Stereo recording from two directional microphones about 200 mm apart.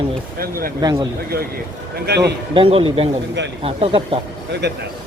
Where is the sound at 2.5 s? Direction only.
25° right (ahead or behind).